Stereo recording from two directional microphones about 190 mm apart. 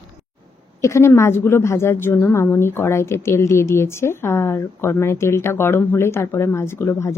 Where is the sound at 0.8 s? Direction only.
15° left (ahead or behind).